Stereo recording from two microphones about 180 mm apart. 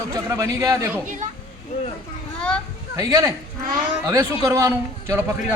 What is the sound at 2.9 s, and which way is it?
Speech, 20° right (ahead or behind).